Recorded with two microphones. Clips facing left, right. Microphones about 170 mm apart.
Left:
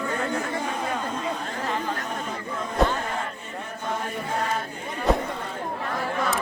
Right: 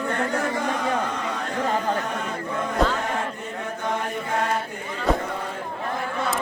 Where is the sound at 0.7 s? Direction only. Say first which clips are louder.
Right 3 dB; 80° right.